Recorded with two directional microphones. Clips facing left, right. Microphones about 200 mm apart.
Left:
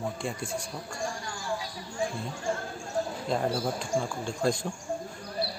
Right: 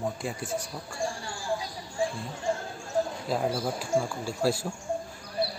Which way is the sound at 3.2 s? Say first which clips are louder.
Even; 5° right (ahead or behind).